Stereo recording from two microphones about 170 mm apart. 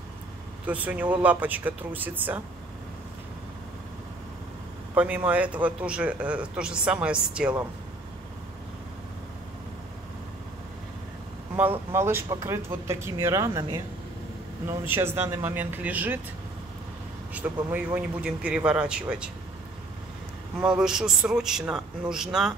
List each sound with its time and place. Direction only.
0.7 s a man's voice: 10° right (ahead or behind)
4.9 s a man's voice: 10° right (ahead or behind)
11.5 s a man's voice: 10° right (ahead or behind)
17.3 s a man's voice: 10° right (ahead or behind)
20.6 s a man's voice: 5° right (ahead or behind)